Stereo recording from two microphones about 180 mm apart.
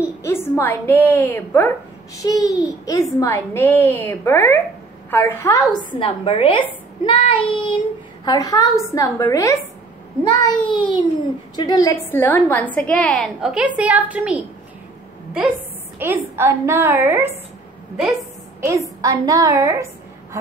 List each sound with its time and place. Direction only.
0.0 s a child's voice: 15° left (ahead or behind)
10.6 s a woman's voice: 25° left (ahead or behind); by 14.4 s 5° right (ahead or behind)
16.0 s a woman's voice: 15° right (ahead or behind)
18.6 s a woman's voice: 15° right (ahead or behind)